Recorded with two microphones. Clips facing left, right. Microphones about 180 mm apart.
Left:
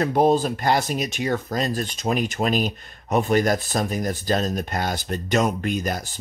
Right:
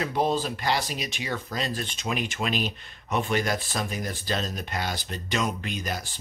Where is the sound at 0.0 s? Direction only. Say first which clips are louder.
Left 7 dB; 45° left (ahead or behind).